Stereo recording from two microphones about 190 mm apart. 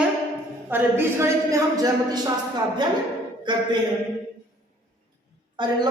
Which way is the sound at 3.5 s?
25° right (ahead or behind).